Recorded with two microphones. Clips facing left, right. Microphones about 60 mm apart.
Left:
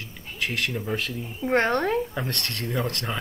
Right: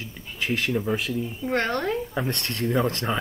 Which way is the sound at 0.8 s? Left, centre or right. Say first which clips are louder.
Right 3 dB; centre.